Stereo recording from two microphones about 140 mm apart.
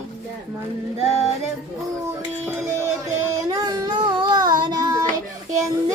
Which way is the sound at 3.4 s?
30° right (ahead or behind).